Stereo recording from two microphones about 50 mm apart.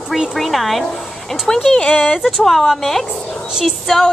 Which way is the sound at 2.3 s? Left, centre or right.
Centre.